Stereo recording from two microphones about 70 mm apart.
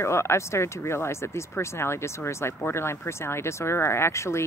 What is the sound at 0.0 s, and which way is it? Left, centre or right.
Speech, left.